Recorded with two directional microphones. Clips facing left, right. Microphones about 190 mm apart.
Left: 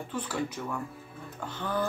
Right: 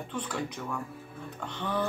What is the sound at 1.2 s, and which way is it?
Music, 5° left (ahead or behind).